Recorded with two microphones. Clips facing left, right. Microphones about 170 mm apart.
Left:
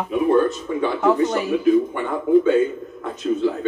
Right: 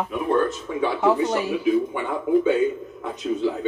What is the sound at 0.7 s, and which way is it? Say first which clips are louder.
Speech: left 2 dB; 10° right (ahead or behind).